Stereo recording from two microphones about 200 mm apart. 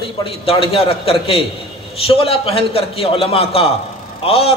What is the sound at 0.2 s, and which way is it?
A man's voice, 30° left (ahead or behind).